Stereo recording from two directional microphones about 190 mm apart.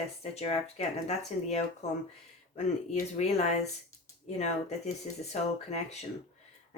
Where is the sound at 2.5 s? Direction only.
40° left (ahead or behind).